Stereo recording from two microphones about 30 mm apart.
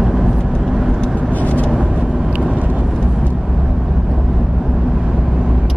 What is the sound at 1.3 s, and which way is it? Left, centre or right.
Vehicle, left.